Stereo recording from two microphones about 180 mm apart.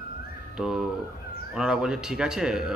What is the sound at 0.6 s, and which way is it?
Speech, centre (ahead or behind).